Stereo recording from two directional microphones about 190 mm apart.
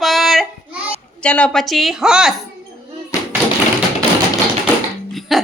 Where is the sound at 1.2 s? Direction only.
5° left (ahead or behind).